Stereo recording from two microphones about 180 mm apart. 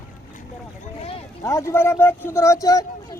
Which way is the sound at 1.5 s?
15° left (ahead or behind).